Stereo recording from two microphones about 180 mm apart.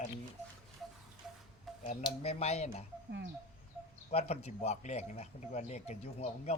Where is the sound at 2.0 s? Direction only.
35° left (ahead or behind).